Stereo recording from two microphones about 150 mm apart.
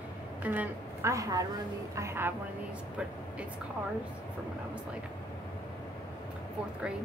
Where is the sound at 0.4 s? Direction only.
10° right (ahead or behind).